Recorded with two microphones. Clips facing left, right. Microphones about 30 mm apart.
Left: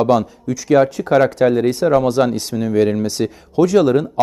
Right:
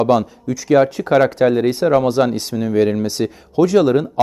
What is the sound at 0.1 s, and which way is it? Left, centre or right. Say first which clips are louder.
Speech: even; centre.